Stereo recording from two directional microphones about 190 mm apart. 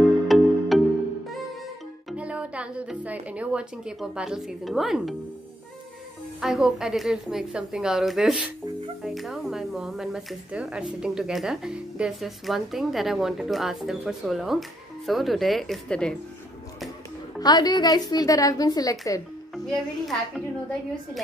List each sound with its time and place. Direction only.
0.3 s music: centre (ahead or behind)
2.0 s music: 5° right (ahead or behind)
6.4 s speech: centre (ahead or behind)
17.4 s a woman's voice: 20° left (ahead or behind)
19.5 s a child's voice: centre (ahead or behind)